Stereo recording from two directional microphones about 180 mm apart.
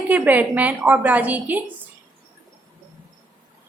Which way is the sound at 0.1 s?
10° right (ahead or behind).